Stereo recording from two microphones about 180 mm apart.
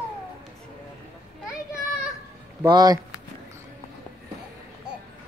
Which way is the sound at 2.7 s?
20° right (ahead or behind).